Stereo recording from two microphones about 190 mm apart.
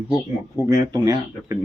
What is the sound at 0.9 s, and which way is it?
Speech, 20° right (ahead or behind).